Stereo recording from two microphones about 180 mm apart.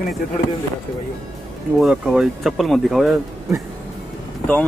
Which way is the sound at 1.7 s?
5° right (ahead or behind).